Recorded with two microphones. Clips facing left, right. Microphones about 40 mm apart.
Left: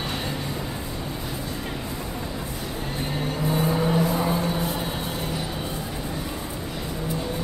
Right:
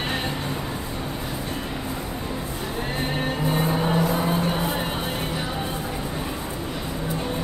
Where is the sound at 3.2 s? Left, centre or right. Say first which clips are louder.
Left 1 dB; right.